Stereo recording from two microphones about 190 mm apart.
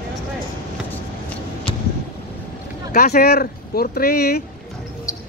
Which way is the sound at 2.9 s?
50° left (ahead or behind).